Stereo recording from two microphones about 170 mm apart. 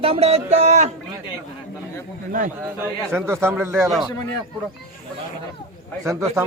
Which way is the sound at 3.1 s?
15° right (ahead or behind).